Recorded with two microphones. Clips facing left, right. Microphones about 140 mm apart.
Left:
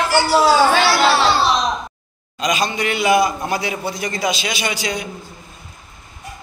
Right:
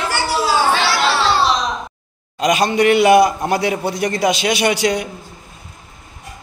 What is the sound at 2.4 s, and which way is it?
A man's voice, 60° right (ahead or behind).